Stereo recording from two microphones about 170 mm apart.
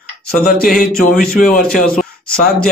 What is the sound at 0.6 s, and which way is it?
Speech, 55° left (ahead or behind).